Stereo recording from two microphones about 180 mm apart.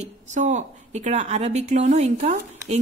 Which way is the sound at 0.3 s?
40° right (ahead or behind).